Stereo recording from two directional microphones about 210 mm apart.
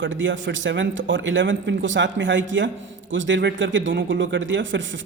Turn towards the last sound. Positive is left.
turn(degrees=-60)  # may be behind; listen again after turning